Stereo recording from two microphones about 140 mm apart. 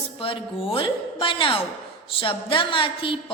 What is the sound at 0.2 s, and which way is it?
A woman's voice, 40° left (ahead or behind).